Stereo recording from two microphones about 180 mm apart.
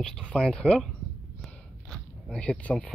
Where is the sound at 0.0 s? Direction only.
5° left (ahead or behind).